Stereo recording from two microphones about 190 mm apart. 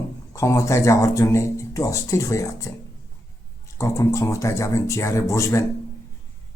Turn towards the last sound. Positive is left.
turn(degrees=15)  # may be behind; listen again after turning